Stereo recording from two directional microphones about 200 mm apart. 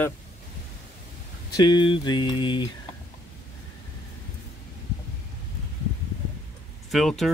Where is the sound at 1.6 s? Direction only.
25° left (ahead or behind).